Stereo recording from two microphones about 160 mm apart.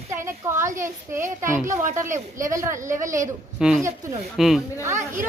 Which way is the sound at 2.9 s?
55° right (ahead or behind).